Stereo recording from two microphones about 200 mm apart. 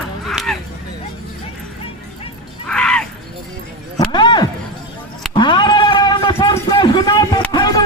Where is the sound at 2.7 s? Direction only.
5° left (ahead or behind).